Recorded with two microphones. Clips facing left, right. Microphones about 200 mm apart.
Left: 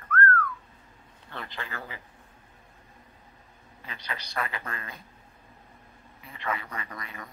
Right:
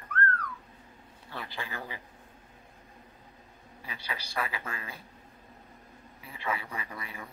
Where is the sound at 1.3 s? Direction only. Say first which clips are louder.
Left 1 dB; 5° right (ahead or behind).